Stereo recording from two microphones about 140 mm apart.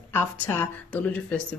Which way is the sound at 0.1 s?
15° left (ahead or behind).